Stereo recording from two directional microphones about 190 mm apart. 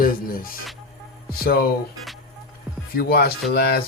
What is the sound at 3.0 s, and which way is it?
Speech, 55° left (ahead or behind).